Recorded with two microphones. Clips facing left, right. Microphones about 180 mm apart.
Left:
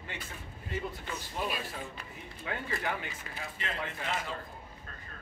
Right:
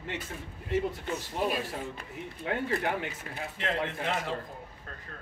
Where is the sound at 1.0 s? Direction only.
40° right (ahead or behind).